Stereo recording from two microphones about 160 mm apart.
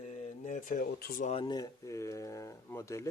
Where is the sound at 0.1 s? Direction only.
50° left (ahead or behind); by 1.2 s 70° left (ahead or behind).